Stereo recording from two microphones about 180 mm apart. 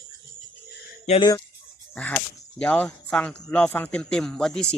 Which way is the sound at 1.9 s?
10° left (ahead or behind).